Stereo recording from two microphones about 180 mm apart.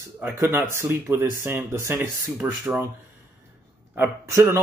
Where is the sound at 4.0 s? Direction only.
15° right (ahead or behind).